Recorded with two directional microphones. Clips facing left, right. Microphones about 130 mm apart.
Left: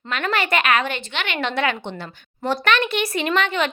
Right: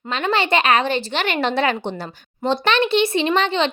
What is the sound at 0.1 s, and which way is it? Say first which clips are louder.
A woman's voice: right 3 dB; 25° right (ahead or behind).